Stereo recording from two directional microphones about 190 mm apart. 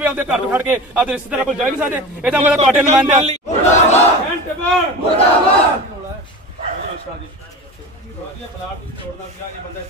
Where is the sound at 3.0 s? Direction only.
35° right (ahead or behind).